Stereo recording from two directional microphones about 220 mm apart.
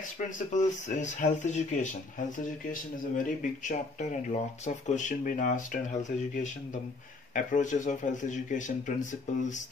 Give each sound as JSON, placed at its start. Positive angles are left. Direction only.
{"t": 0.2, "sound": "speech", "side_deg": 35}